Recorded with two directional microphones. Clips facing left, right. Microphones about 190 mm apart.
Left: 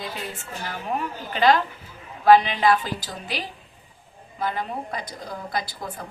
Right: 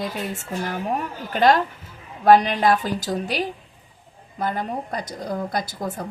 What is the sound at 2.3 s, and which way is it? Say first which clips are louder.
A woman's voice: right 1 dB; 45° right (ahead or behind).